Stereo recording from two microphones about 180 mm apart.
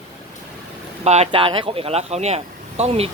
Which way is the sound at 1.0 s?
35° right (ahead or behind).